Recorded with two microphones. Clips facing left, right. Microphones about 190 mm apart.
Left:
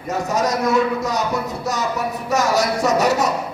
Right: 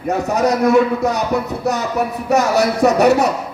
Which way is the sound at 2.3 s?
60° right (ahead or behind).